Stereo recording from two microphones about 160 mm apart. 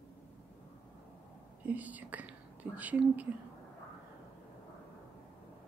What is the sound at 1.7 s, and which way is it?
Speech, 10° right (ahead or behind).